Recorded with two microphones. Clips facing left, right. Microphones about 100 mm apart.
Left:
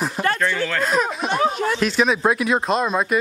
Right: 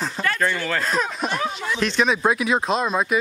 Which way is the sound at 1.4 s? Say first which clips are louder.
Left 6 dB; 45° left (ahead or behind).